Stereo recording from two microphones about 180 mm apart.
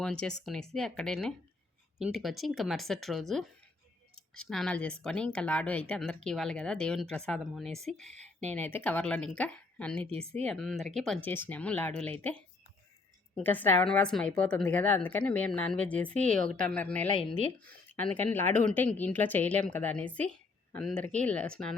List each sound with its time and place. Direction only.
0.0 s a woman's voice: 5° left (ahead or behind)
10.1 s speech: 35° right (ahead or behind)
10.4 s a woman's voice: 5° left (ahead or behind)
16.4 s a woman's voice: 50° right (ahead or behind)
16.6 s a woman's voice: 5° left (ahead or behind)